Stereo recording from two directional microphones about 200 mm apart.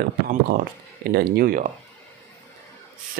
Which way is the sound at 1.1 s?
45° right (ahead or behind).